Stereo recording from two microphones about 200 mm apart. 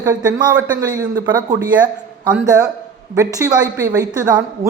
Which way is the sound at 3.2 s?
15° right (ahead or behind).